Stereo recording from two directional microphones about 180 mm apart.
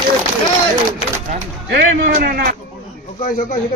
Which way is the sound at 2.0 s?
45° right (ahead or behind).